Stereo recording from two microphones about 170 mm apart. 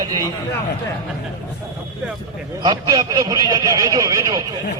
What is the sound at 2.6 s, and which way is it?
A man's voice, 25° right (ahead or behind).